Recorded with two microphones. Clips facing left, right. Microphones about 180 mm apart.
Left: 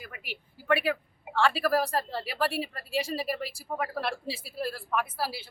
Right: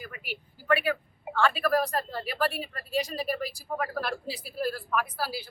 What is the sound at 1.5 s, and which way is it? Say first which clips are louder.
Speech: even; 30° left (ahead or behind).